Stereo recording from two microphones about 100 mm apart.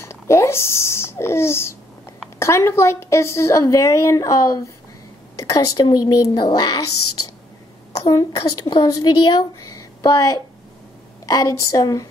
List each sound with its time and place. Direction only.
0.0 s a child's voice: 30° left (ahead or behind); by 6.8 s 45° left (ahead or behind)
8.1 s a woman's voice: 40° left (ahead or behind)